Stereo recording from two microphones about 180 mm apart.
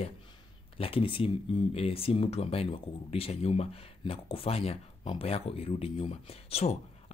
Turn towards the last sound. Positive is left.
turn(degrees=35)  # may be behind; listen again after turning